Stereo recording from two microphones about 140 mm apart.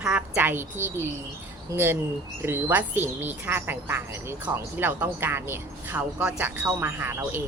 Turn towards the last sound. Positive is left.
turn(degrees=-15)  # may be behind; listen again after turning